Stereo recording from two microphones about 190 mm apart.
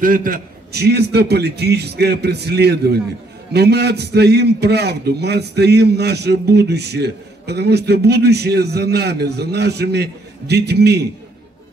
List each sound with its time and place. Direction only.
0.0 s a man's voice: 45° right (ahead or behind)